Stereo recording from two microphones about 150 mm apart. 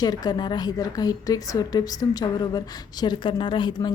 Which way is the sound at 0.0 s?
25° left (ahead or behind).